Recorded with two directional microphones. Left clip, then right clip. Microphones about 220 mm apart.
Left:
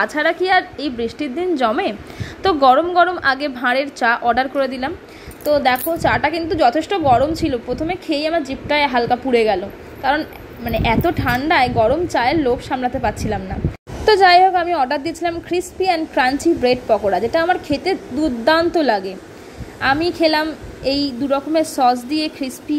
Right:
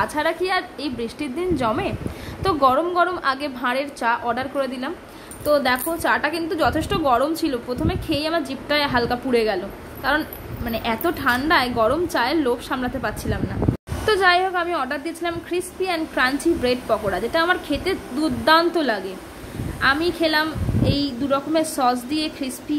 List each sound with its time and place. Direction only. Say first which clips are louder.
0.0 s a woman's voice: left 4 dB; 15° left (ahead or behind)